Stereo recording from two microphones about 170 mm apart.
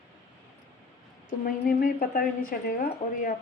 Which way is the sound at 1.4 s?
55° left (ahead or behind).